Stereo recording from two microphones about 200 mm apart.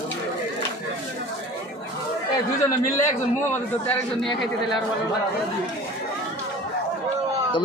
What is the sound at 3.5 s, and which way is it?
Speech, 10° left (ahead or behind).